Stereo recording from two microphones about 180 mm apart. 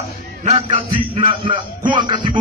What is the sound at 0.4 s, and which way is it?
A man's voice, 35° right (ahead or behind).